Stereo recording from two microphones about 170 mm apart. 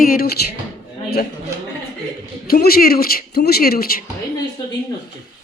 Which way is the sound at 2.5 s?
60° left (ahead or behind).